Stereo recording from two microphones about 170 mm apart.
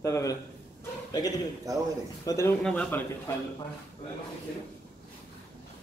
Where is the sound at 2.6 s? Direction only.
5° left (ahead or behind).